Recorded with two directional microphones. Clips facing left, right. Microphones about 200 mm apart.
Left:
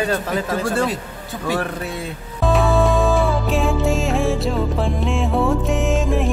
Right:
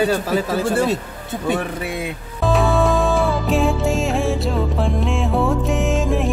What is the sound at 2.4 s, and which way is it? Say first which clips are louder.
Music: even; centre (ahead or behind).